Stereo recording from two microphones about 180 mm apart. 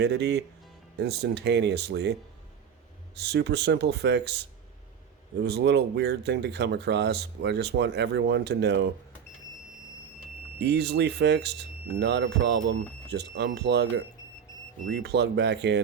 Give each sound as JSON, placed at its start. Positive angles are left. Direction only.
{"t": 0.0, "sound": "speech", "side_deg": -70}
{"t": 3.2, "sound": "speech", "side_deg": -70}
{"t": 5.4, "sound": "speech", "side_deg": -70}
{"t": 10.6, "sound": "speech", "side_deg": -65}